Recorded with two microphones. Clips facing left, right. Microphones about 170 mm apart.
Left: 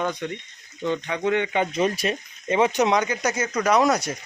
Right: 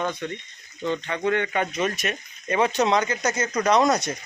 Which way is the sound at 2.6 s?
15° left (ahead or behind).